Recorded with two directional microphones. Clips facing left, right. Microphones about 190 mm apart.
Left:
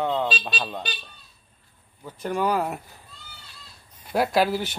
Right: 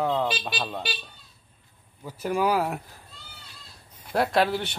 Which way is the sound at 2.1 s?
5° right (ahead or behind).